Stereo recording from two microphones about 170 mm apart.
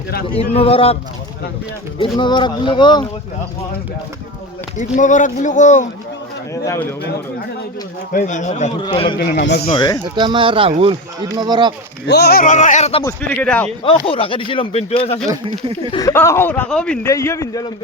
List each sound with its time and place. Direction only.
0.5 s speech: 35° left (ahead or behind)
2.0 s speech: 25° left (ahead or behind)
4.9 s a man's voice: 45° left (ahead or behind)
6.5 s a man's voice: 15° left (ahead or behind)
8.1 s a man's voice: 45° left (ahead or behind)
8.9 s speech: 30° left (ahead or behind)
9.1 s a man's voice: 65° left (ahead or behind)
9.6 s speech: 25° left (ahead or behind)
10.0 s speech: 25° right (ahead or behind)
12.0 s a man's voice: 70° left (ahead or behind); by 13.0 s 40° left (ahead or behind)
13.3 s a man's voice: 5° left (ahead or behind)
13.8 s speech: 35° left (ahead or behind)
15.9 s a man's voice: 20° left (ahead or behind); by 17.1 s 5° left (ahead or behind)
17.1 s a man's voice: 20° left (ahead or behind)